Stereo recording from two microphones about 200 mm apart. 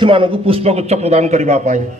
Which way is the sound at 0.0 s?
25° right (ahead or behind).